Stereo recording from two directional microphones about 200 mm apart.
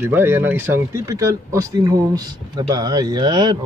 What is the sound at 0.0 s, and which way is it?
Speech, 10° right (ahead or behind).